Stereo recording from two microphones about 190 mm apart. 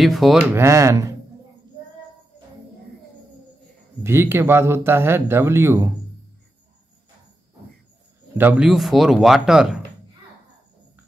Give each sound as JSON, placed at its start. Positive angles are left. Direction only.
{"t": 0.0, "sound": "speech", "side_deg": 0}
{"t": 0.6, "sound": "speech", "side_deg": -15}
{"t": 4.0, "sound": "speech", "side_deg": -15}
{"t": 8.4, "sound": "speech", "side_deg": -5}